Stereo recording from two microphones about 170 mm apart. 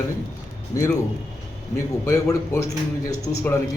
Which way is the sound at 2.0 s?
20° left (ahead or behind).